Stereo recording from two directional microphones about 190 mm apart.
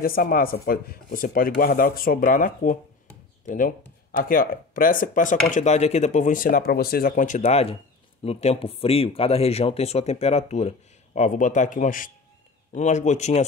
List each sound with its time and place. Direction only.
0.0 s speech: 50° left (ahead or behind)